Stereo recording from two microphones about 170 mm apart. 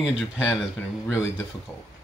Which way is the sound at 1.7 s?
10° left (ahead or behind).